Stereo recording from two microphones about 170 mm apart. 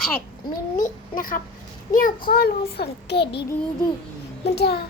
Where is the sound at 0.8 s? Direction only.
55° left (ahead or behind); by 3.4 s 75° left (ahead or behind).